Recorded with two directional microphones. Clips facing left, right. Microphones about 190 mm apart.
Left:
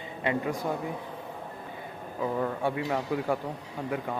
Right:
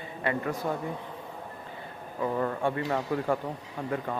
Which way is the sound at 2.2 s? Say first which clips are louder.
Right 1 dB; 5° left (ahead or behind).